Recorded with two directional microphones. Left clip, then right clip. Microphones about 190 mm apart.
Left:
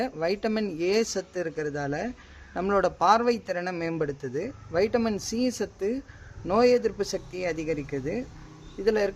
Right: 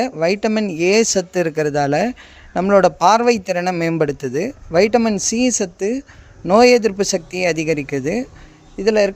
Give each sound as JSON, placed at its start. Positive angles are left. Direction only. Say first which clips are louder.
{"t": 0.0, "sound": "a man's voice", "louder": "right 10 dB", "side_deg": -40}